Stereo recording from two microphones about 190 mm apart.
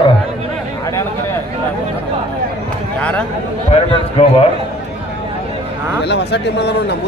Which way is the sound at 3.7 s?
30° left (ahead or behind).